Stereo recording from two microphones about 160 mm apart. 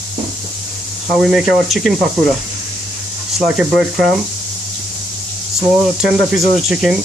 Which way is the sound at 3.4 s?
5° right (ahead or behind).